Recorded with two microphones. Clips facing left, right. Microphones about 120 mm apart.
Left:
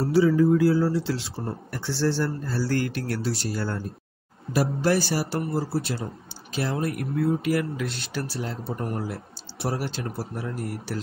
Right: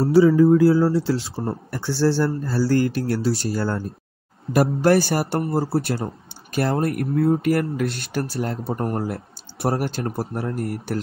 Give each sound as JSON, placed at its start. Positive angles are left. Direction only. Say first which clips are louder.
{"t": 0.0, "sound": "speech", "louder": "right 5 dB", "side_deg": -35}
{"t": 4.5, "sound": "speech", "louder": "right 6 dB", "side_deg": -55}